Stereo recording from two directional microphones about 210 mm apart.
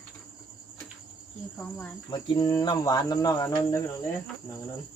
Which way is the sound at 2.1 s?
20° left (ahead or behind).